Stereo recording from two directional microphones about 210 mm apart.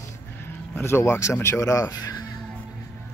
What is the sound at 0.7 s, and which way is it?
Speech, 10° left (ahead or behind).